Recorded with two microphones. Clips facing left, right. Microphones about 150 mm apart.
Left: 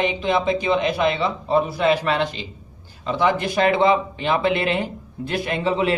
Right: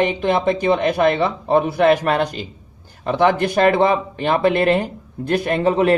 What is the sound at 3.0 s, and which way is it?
Speech, 55° right (ahead or behind).